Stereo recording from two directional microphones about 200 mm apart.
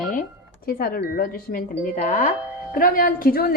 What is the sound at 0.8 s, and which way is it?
Speech, 45° left (ahead or behind).